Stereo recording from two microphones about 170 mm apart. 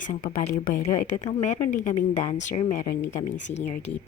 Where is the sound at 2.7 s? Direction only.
55° left (ahead or behind).